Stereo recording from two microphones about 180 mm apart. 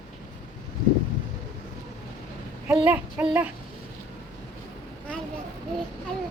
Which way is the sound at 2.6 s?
10° right (ahead or behind).